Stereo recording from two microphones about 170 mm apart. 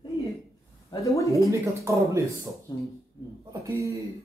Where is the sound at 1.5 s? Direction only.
15° right (ahead or behind).